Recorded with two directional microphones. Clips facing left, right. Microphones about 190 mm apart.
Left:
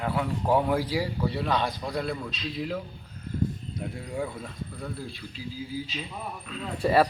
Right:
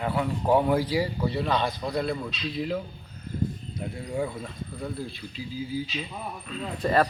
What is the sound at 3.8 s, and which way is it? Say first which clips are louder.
A man's voice: right 3 dB; centre (ahead or behind).